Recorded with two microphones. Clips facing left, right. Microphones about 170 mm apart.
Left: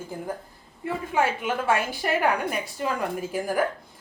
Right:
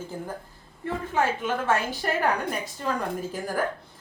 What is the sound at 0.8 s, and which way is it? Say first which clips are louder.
A woman's voice: left 1 dB; 10° left (ahead or behind).